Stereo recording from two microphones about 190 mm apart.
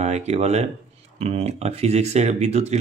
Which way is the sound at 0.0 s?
35° right (ahead or behind).